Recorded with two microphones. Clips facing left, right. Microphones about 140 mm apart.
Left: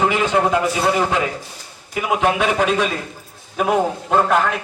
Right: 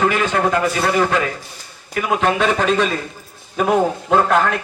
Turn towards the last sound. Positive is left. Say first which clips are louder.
# right 1 dB
turn(degrees=0)  # may be behind; listen again after turning